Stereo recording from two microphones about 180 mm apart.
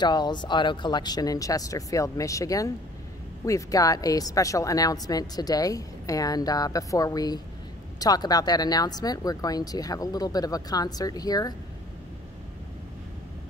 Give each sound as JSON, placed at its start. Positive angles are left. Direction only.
{"t": 0.0, "sound": "a woman's voice", "side_deg": 25}